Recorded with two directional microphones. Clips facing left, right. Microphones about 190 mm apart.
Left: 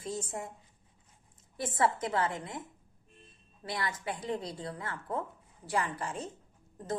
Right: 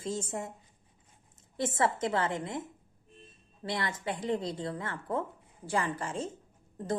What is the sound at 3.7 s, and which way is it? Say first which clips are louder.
Speech: right 2 dB; 25° right (ahead or behind).